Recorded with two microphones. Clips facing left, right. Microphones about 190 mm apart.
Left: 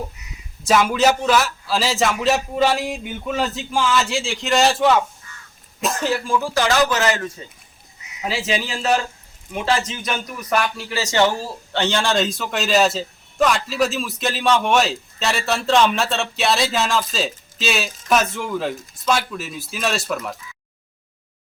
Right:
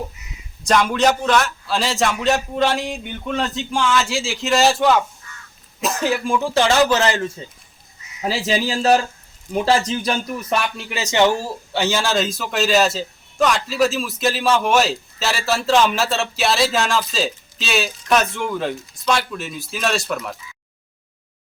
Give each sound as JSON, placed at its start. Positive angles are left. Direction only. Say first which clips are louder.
{"t": 0.6, "sound": "a man's voice", "louder": "even", "side_deg": 5}
{"t": 6.1, "sound": "a man's voice", "louder": "right 2 dB", "side_deg": -15}
{"t": 10.8, "sound": "speech", "louder": "right 3 dB", "side_deg": -20}
{"t": 11.7, "sound": "a man's voice", "louder": "even", "side_deg": -5}